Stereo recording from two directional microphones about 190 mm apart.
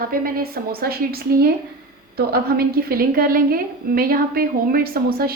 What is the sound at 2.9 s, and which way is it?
A woman's voice, 50° right (ahead or behind).